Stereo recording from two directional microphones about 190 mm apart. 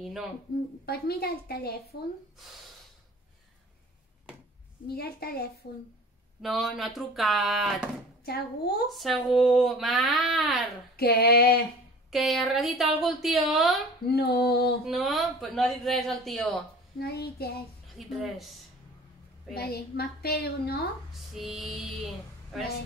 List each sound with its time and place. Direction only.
0.0 s a sound: centre (ahead or behind)
0.8 s a woman's voice: 55° left (ahead or behind)
4.8 s a woman's voice: 55° left (ahead or behind)
5.6 s female singing: 50° left (ahead or behind)
6.4 s speech: centre (ahead or behind)
11.0 s female singing: 55° left (ahead or behind)
12.1 s speech: centre (ahead or behind)
14.0 s a woman's voice: 55° left (ahead or behind)
14.9 s speech: centre (ahead or behind)
17.0 s a woman's voice: 55° left (ahead or behind)
17.9 s speech: centre (ahead or behind)
19.5 s a woman's voice: 55° left (ahead or behind)
21.4 s speech: centre (ahead or behind)